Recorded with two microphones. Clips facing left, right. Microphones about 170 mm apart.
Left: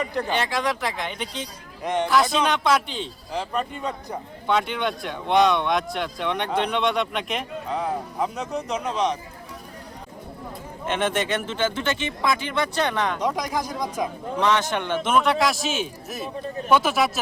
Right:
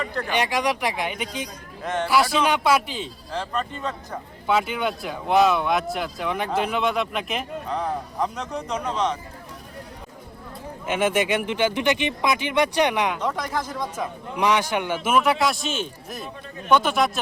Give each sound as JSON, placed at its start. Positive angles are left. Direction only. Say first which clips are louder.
{"t": 0.0, "sound": "speech", "louder": "left 2 dB", "side_deg": 15}
{"t": 0.3, "sound": "speech", "louder": "right 4 dB", "side_deg": -15}
{"t": 1.8, "sound": "speech", "louder": "left 2 dB", "side_deg": 15}
{"t": 2.0, "sound": "speech", "louder": "right 1 dB", "side_deg": -10}
{"t": 3.3, "sound": "speech", "louder": "left 1 dB", "side_deg": 10}
{"t": 4.4, "sound": "speech", "louder": "right 1 dB", "side_deg": -5}
{"t": 10.8, "sound": "speech", "louder": "right 2 dB", "side_deg": -10}
{"t": 13.2, "sound": "speech", "louder": "left 1 dB", "side_deg": 15}
{"t": 14.3, "sound": "speech", "louder": "right 1 dB", "side_deg": -10}